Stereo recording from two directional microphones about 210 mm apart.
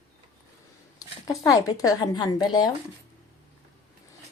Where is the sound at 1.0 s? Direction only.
15° left (ahead or behind).